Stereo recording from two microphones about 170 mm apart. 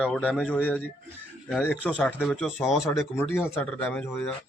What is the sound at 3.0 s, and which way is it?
Speech, 15° left (ahead or behind).